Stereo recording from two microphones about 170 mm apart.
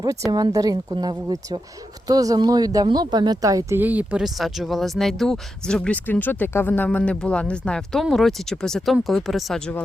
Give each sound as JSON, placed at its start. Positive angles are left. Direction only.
{"t": 0.3, "sound": "a woman's voice", "side_deg": -20}